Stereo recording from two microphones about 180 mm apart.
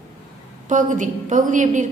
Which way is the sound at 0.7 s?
45° right (ahead or behind).